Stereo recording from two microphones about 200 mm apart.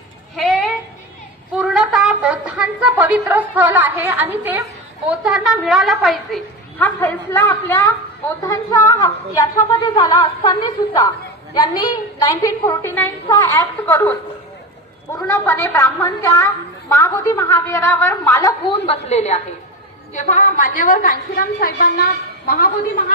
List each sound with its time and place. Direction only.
0.4 s a sound: centre (ahead or behind)
1.5 s a woman's voice: 5° right (ahead or behind)
7.0 s a woman's voice: 10° left (ahead or behind)
15.2 s a woman's voice: 15° left (ahead or behind)
18.9 s a woman's voice: 35° left (ahead or behind)